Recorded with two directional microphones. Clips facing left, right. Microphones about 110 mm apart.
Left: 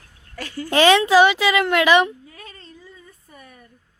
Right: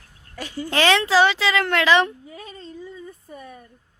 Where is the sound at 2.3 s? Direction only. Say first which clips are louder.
Right 5 dB; 20° right (ahead or behind).